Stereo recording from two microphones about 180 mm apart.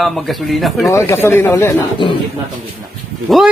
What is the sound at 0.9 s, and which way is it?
Speech, 15° left (ahead or behind).